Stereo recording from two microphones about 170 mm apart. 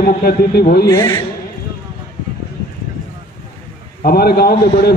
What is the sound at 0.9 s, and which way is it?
Speech, 20° left (ahead or behind).